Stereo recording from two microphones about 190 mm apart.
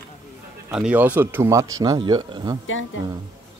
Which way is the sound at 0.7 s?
5° right (ahead or behind).